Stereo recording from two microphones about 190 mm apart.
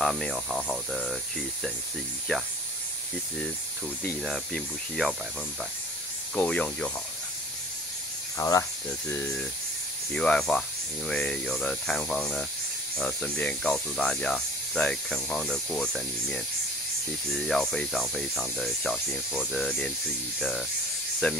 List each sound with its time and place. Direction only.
0.0 s speech: centre (ahead or behind)
4.2 s speech: centre (ahead or behind)
6.3 s speech: 5° left (ahead or behind)
8.4 s speech: 15° left (ahead or behind); by 20.6 s centre (ahead or behind)